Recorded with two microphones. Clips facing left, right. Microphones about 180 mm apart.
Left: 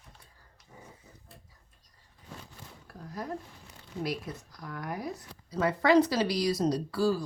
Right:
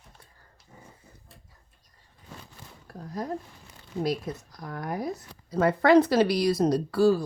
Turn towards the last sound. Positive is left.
turn(degrees=-60)  # may be behind; listen again after turning